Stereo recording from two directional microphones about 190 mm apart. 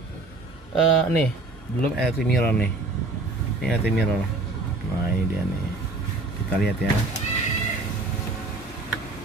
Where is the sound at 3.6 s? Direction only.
5° right (ahead or behind).